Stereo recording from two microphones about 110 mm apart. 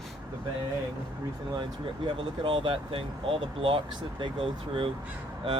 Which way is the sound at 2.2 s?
55° right (ahead or behind).